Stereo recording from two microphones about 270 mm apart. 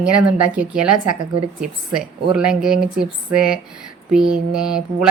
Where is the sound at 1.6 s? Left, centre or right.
Centre.